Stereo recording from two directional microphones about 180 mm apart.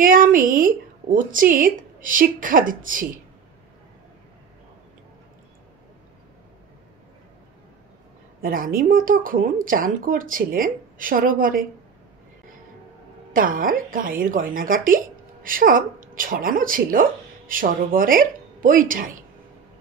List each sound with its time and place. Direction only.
0.0 s speech: 50° right (ahead or behind)
8.4 s speech: 50° right (ahead or behind)
13.3 s a woman's voice: 50° right (ahead or behind)